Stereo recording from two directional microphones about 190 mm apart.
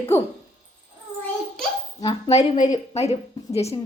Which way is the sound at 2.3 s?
35° left (ahead or behind).